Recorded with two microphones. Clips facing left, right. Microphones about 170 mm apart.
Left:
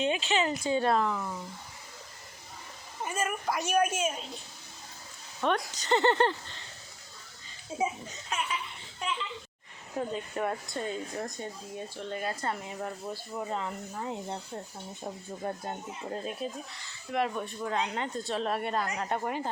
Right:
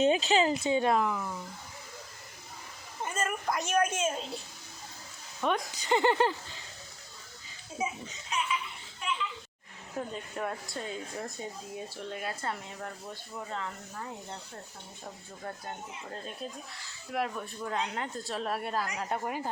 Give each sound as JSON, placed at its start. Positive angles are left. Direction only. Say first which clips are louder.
{"t": 0.0, "sound": "speech", "louder": "right 3 dB", "side_deg": -40}
{"t": 0.5, "sound": "speech", "louder": "even", "side_deg": -20}
{"t": 1.1, "sound": "speech", "louder": "left 1 dB", "side_deg": 0}
{"t": 3.0, "sound": "a woman's voice", "louder": "left 1 dB", "side_deg": 10}
{"t": 5.4, "sound": "speech", "louder": "left 1 dB", "side_deg": -5}
{"t": 8.3, "sound": "laughter", "louder": "even", "side_deg": 50}
{"t": 10.1, "sound": "speech", "louder": "left 4 dB", "side_deg": 0}
{"t": 13.3, "sound": "speech", "louder": "left 4 dB", "side_deg": 20}
{"t": 16.2, "sound": "speech", "louder": "left 5 dB", "side_deg": 0}